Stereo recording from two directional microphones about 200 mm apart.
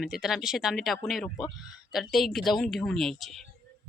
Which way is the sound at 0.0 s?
Centre (ahead or behind).